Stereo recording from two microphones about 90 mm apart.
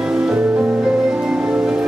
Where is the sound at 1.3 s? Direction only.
15° right (ahead or behind).